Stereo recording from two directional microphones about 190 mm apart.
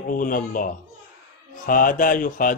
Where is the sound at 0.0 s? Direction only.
45° left (ahead or behind).